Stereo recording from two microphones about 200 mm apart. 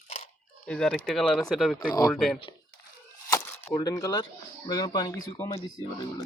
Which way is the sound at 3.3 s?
15° left (ahead or behind).